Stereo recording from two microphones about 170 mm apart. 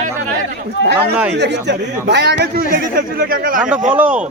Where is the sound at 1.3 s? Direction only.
90° right.